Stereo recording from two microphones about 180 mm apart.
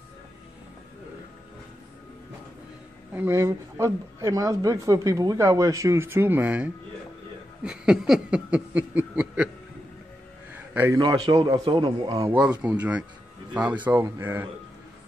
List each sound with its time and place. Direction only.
3.1 s speech: 10° right (ahead or behind)
10.5 s a sound: 10° right (ahead or behind)
11.0 s speech: 25° right (ahead or behind)
12.3 s speech: 5° right (ahead or behind)